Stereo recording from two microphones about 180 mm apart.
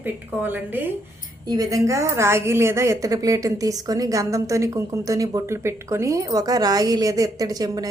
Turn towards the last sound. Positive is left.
turn(degrees=-20)  # may be behind; listen again after turning